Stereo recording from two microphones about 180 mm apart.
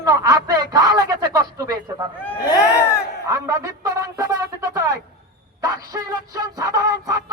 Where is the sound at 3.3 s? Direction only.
20° right (ahead or behind).